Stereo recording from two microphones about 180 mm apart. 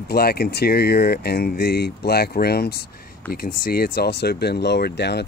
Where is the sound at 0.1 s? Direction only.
60° left (ahead or behind).